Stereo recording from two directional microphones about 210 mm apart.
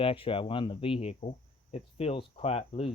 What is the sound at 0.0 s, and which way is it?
Cricket, 25° left (ahead or behind).